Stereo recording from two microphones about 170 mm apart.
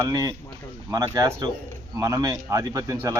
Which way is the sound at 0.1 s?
20° right (ahead or behind).